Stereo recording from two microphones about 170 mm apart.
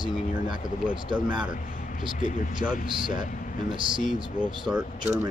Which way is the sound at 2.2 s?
50° left (ahead or behind).